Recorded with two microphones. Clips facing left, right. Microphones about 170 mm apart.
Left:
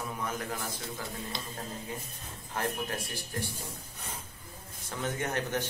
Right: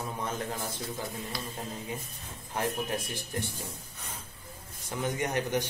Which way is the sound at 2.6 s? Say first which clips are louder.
Right 2 dB; 20° right (ahead or behind).